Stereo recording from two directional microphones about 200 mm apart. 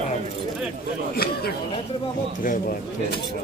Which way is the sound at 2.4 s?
45° left (ahead or behind).